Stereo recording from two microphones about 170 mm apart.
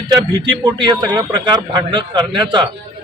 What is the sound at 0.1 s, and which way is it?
A man's voice, 25° right (ahead or behind).